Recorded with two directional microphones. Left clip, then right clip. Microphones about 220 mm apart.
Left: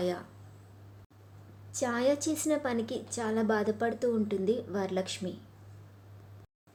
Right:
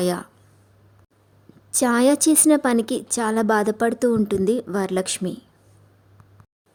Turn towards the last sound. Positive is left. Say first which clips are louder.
# right 9 dB
turn(degrees=-50)  # may be behind; listen again after turning